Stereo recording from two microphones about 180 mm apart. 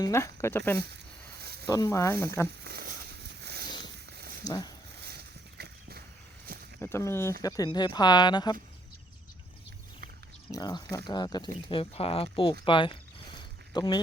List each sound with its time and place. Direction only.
0.0 s speech: 15° left (ahead or behind)
2.6 s a sound: 60° right (ahead or behind)
3.7 s zipper: 25° left (ahead or behind)
3.9 s a sound: 60° right (ahead or behind)
4.4 s speech: 20° left (ahead or behind)
5.5 s horse: 60° right (ahead or behind)
6.7 s speech: 15° left (ahead or behind)
10.5 s speech: 20° left (ahead or behind)
12.6 s a sound: 25° left (ahead or behind)